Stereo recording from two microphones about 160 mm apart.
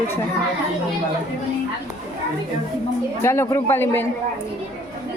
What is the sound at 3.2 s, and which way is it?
Speech, 15° left (ahead or behind).